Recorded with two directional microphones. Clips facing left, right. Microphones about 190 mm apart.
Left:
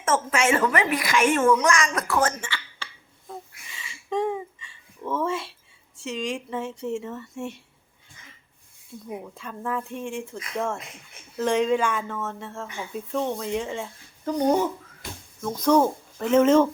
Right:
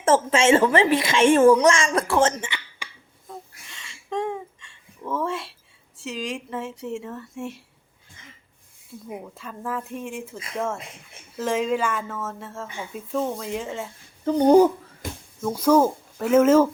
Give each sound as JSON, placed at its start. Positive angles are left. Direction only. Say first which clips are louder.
{"t": 0.0, "sound": "a woman's voice", "louder": "right 5 dB", "side_deg": -30}
{"t": 3.3, "sound": "a sound", "louder": "left 1 dB", "side_deg": 0}
{"t": 6.0, "sound": "speech", "louder": "left 1 dB", "side_deg": 0}
{"t": 9.2, "sound": "speech", "louder": "even", "side_deg": 0}
{"t": 14.3, "sound": "speech", "louder": "right 7 dB", "side_deg": -30}
{"t": 15.4, "sound": "speech", "louder": "right 2 dB", "side_deg": -10}